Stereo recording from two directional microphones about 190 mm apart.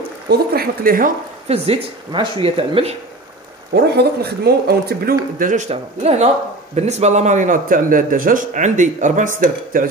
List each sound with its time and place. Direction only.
0.3 s speech: 55° right (ahead or behind)
1.5 s speech: 30° right (ahead or behind)
3.7 s speech: 60° right (ahead or behind)